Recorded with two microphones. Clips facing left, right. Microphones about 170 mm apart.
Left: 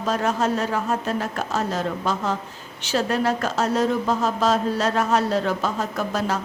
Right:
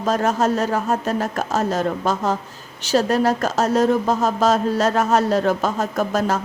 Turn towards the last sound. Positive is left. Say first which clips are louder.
# right 4 dB
turn(degrees=-45)  # may be behind; listen again after turning